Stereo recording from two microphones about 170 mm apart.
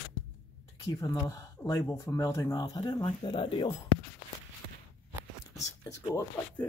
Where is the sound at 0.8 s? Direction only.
20° left (ahead or behind).